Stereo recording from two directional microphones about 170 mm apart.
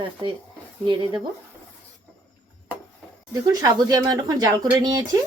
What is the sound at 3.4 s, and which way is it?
Speech, 20° right (ahead or behind).